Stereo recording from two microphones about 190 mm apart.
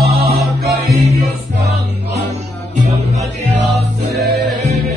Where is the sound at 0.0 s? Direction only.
55° right (ahead or behind).